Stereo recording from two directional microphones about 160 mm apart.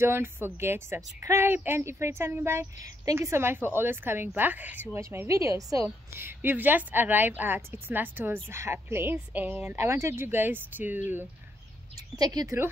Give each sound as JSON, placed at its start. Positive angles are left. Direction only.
{"t": 0.0, "sound": "a woman's voice", "side_deg": -15}
{"t": 12.2, "sound": "speech", "side_deg": -25}